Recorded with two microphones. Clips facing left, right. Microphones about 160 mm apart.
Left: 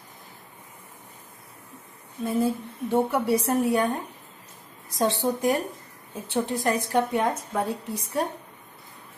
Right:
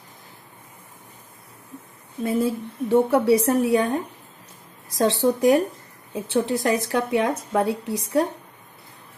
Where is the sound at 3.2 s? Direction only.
85° right.